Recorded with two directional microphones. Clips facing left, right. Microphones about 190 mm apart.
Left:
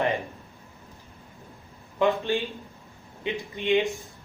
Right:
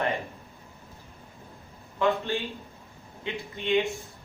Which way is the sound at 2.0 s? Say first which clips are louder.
Left 2 dB; 15° left (ahead or behind).